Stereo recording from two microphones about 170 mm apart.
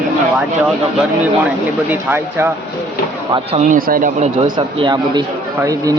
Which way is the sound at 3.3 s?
35° right (ahead or behind).